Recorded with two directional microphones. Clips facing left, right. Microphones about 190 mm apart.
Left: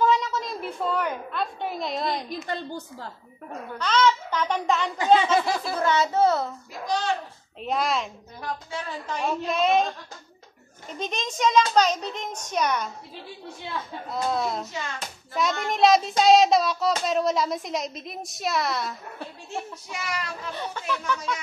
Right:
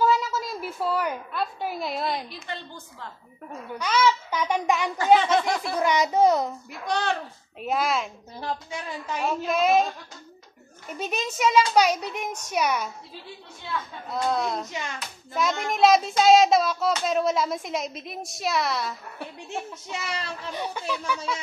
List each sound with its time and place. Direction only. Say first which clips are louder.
0.0 s a sound: even; 5° right (ahead or behind)
2.2 s a woman's voice: left 6 dB; 40° left (ahead or behind)
3.7 s a child's voice: left 1 dB; 10° right (ahead or behind)
5.2 s a sound: even; 10° left (ahead or behind)
5.8 s a child's voice: right 1 dB; 15° right (ahead or behind)
6.9 s a child's voice: even; 60° right (ahead or behind)
7.6 s child singing: even; 5° right (ahead or behind)
11.0 s a child's voice: even; 5° right (ahead or behind)
14.1 s child singing: right 1 dB; centre (ahead or behind)
19.5 s a child's voice: right 1 dB; 25° right (ahead or behind)
20.5 s a child's voice: right 3 dB; 15° right (ahead or behind)